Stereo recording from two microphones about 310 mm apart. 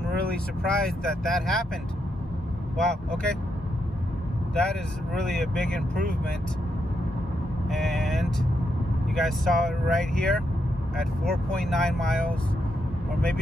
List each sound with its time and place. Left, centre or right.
0.7 s speech: centre
2.8 s speech: centre
5.1 s speech: centre
7.7 s speech: centre